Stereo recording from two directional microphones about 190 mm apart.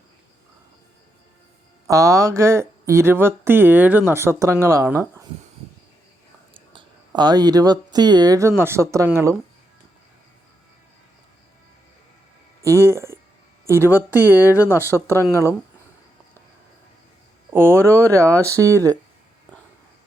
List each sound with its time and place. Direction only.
1.9 s speech: 15° right (ahead or behind)
6.5 s speech: 25° right (ahead or behind)
12.6 s speech: 15° right (ahead or behind)
17.5 s speech: 10° right (ahead or behind)